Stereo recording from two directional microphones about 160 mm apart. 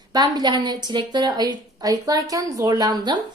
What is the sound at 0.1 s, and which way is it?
A woman's voice, 25° right (ahead or behind).